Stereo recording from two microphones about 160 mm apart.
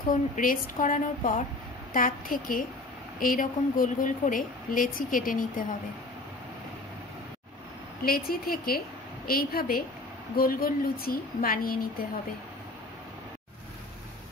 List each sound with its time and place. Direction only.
0.1 s a woman's voice: 55° left (ahead or behind)
8.0 s a woman's voice: 70° left (ahead or behind)